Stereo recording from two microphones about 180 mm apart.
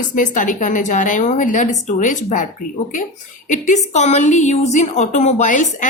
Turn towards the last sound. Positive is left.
turn(degrees=45)  # may be behind; listen again after turning